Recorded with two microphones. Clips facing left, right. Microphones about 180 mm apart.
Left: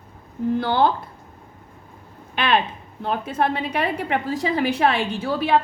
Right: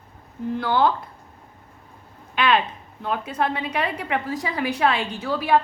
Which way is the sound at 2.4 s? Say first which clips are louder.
Even; 30° left (ahead or behind).